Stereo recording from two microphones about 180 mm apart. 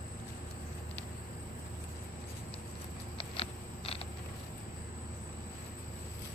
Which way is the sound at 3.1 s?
30° left (ahead or behind).